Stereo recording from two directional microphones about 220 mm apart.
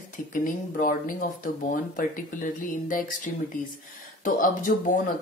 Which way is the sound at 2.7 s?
40° left (ahead or behind).